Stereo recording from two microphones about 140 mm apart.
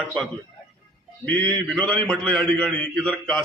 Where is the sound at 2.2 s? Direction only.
10° left (ahead or behind).